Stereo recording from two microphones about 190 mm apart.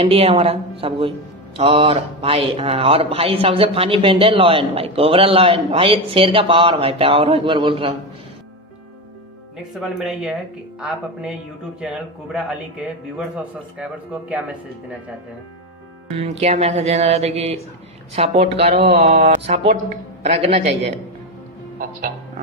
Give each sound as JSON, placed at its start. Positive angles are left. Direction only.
{"t": 0.0, "sound": "speech", "side_deg": -30}
{"t": 9.6, "sound": "a man's voice", "side_deg": 0}
{"t": 16.2, "sound": "speech", "side_deg": -35}